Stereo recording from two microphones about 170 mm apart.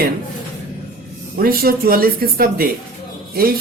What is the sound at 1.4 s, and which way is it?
Speech, 60° right (ahead or behind).